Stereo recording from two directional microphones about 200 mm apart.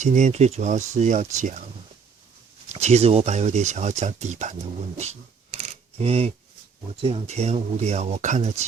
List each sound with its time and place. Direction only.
0.0 s speech: 35° right (ahead or behind)
2.7 s speech: 30° right (ahead or behind)
6.0 s speech: 30° right (ahead or behind)